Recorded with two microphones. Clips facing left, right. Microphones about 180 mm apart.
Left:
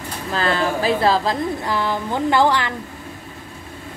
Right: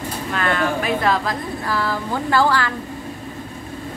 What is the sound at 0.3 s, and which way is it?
A woman's voice, 30° left (ahead or behind).